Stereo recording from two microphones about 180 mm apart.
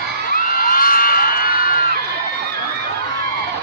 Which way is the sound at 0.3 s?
50° left (ahead or behind).